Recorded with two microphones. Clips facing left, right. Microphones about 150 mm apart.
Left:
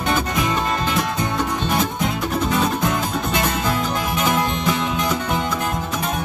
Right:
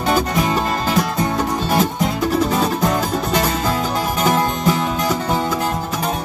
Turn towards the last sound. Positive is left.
turn(degrees=-40)  # may be behind; listen again after turning